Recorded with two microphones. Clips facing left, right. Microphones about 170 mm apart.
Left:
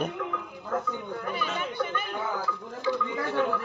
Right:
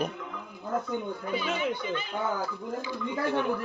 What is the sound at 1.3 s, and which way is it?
Speech, 55° left (ahead or behind).